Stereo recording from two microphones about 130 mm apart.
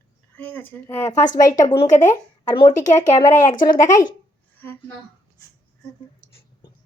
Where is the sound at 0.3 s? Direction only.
10° left (ahead or behind).